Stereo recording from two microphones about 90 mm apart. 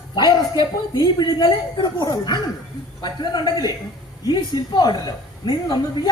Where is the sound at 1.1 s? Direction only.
55° left (ahead or behind).